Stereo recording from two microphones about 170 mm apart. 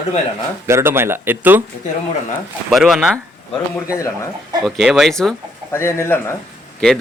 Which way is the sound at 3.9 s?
15° left (ahead or behind).